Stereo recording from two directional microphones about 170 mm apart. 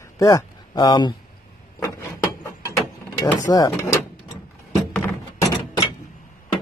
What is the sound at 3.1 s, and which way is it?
Speech, 20° left (ahead or behind).